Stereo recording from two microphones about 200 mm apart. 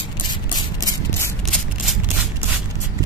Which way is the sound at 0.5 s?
20° left (ahead or behind).